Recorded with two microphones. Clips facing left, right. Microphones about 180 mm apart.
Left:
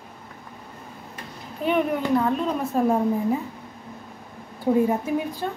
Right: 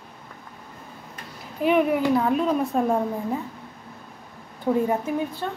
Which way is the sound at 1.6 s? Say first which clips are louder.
Right 3 dB; centre (ahead or behind).